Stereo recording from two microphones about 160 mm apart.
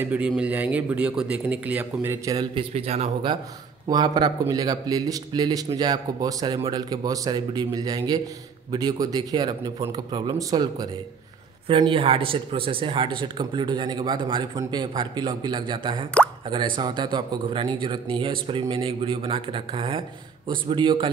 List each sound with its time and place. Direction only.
0.0 s speech: 10° right (ahead or behind)
2.5 s speech: 40° right (ahead or behind)
3.8 s speech: 25° right (ahead or behind)